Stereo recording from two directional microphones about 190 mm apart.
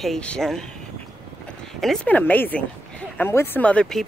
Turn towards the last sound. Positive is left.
turn(degrees=5)  # may be behind; listen again after turning